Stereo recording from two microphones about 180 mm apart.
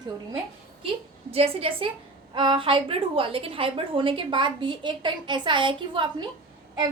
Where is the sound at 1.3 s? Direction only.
35° right (ahead or behind).